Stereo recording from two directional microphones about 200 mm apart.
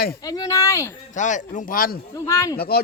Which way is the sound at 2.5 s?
50° left (ahead or behind).